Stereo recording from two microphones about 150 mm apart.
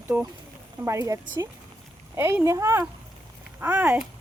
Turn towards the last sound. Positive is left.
turn(degrees=-10)  # may be behind; listen again after turning